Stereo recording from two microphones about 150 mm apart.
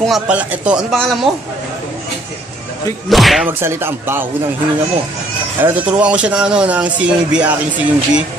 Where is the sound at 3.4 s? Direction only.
15° right (ahead or behind).